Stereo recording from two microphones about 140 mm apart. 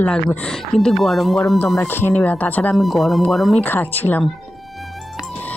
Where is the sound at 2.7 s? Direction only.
Centre (ahead or behind).